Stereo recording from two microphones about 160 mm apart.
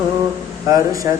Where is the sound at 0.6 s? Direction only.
20° right (ahead or behind).